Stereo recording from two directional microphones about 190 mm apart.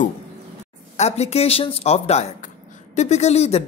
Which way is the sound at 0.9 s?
35° left (ahead or behind).